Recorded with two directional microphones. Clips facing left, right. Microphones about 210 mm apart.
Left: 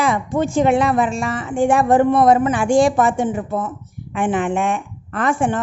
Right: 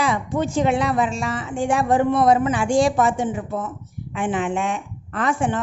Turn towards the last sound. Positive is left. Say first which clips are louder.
# left 3 dB
turn(degrees=50)  # may be behind; listen again after turning